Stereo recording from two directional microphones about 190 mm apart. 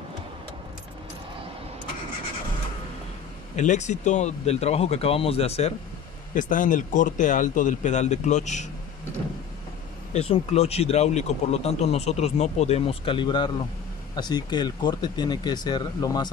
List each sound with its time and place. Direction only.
3.5 s speech: 40° left (ahead or behind)
6.3 s speech: 45° left (ahead or behind)
10.1 s speech: 35° left (ahead or behind)